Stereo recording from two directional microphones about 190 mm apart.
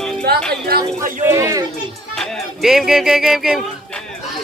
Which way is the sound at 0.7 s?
55° right (ahead or behind).